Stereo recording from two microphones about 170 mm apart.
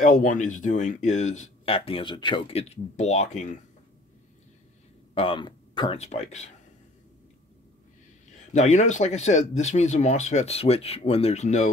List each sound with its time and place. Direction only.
0.0 s speech: 50° left (ahead or behind)
5.1 s speech: 30° left (ahead or behind)
5.9 s speech: 40° left (ahead or behind)
8.5 s speech: 45° left (ahead or behind)